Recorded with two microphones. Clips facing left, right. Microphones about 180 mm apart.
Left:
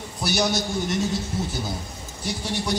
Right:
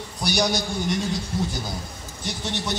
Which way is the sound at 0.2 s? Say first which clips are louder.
Even; 5° left (ahead or behind).